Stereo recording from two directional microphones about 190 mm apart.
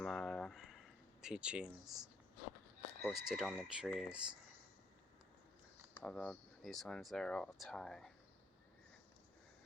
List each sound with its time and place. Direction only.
0.0 s a sound: 5° left (ahead or behind)
3.0 s speech: centre (ahead or behind)
6.0 s speech: 5° left (ahead or behind)